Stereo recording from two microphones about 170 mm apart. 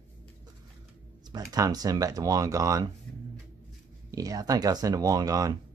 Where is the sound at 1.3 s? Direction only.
20° right (ahead or behind).